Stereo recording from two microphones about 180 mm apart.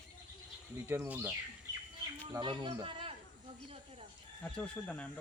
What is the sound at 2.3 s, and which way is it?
Speech, 25° right (ahead or behind).